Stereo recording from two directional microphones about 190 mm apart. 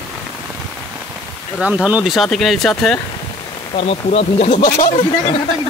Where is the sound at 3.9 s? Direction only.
35° left (ahead or behind).